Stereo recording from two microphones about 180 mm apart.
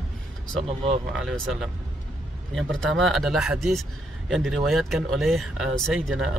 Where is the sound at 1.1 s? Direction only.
5° right (ahead or behind).